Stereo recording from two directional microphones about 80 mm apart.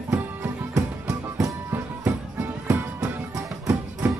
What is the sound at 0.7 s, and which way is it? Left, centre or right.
Music, right.